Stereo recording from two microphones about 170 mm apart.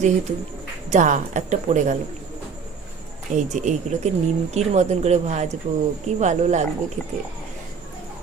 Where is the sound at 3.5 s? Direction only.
45° right (ahead or behind).